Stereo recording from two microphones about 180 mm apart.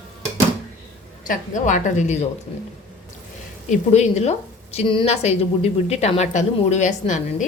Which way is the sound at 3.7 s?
40° left (ahead or behind).